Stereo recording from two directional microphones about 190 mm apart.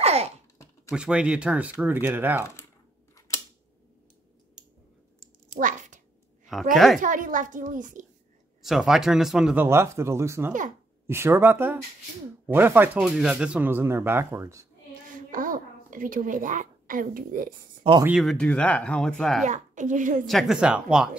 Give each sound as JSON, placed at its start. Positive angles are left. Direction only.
{"t": 0.0, "sound": "a sound", "side_deg": -35}
{"t": 0.9, "sound": "speech", "side_deg": -5}
{"t": 5.6, "sound": "a sound", "side_deg": -40}
{"t": 6.7, "sound": "speech", "side_deg": 0}
{"t": 7.0, "sound": "a woman's voice", "side_deg": -45}
{"t": 8.6, "sound": "speech", "side_deg": -5}
{"t": 9.7, "sound": "speech", "side_deg": -15}
{"t": 15.0, "sound": "speech", "side_deg": -45}
{"t": 18.0, "sound": "speech", "side_deg": 0}
{"t": 19.4, "sound": "a woman's voice", "side_deg": -40}
{"t": 20.2, "sound": "speech", "side_deg": 0}